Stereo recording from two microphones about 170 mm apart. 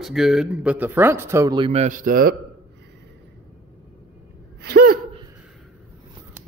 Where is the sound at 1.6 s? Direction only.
40° right (ahead or behind); by 2.3 s 55° right (ahead or behind).